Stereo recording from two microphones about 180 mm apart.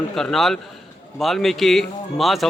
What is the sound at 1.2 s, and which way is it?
A man's voice, centre (ahead or behind).